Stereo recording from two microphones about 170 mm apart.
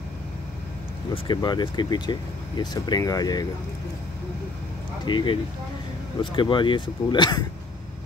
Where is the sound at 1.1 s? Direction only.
25° left (ahead or behind).